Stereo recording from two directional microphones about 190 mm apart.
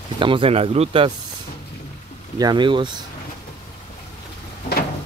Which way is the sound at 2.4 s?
20° right (ahead or behind).